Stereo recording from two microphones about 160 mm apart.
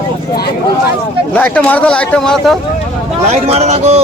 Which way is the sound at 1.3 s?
10° left (ahead or behind).